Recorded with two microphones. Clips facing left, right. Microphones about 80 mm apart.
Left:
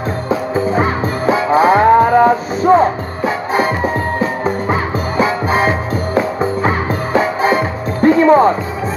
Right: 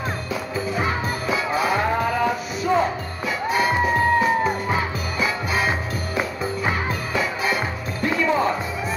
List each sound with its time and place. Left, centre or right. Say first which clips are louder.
0.3 s music: left 13 dB; left